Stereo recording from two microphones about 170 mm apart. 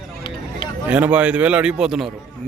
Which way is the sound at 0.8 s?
10° right (ahead or behind).